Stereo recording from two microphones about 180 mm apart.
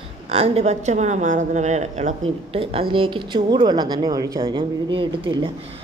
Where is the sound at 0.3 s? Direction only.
35° right (ahead or behind).